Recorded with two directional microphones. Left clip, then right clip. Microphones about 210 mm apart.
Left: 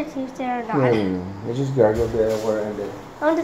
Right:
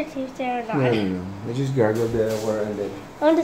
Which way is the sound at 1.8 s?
30° right (ahead or behind).